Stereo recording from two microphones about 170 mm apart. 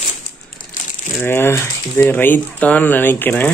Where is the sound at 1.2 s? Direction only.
15° left (ahead or behind).